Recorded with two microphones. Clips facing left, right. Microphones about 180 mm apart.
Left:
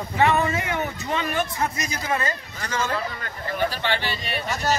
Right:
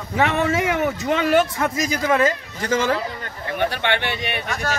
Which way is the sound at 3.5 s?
65° right (ahead or behind).